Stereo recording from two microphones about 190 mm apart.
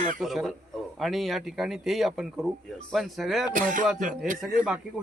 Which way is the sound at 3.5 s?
45° right (ahead or behind).